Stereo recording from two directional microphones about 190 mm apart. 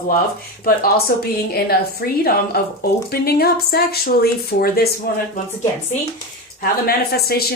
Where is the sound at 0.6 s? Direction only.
50° left (ahead or behind).